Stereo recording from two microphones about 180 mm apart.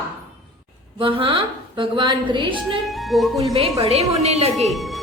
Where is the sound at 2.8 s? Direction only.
Centre (ahead or behind).